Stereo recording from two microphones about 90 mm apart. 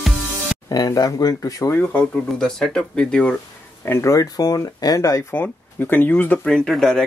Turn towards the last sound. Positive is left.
turn(degrees=5)  # may be behind; listen again after turning